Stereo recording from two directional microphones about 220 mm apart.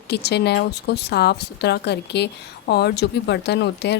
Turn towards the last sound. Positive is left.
turn(degrees=50)  # may be behind; listen again after turning